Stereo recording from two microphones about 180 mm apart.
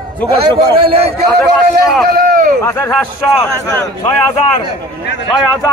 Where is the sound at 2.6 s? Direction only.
15° left (ahead or behind).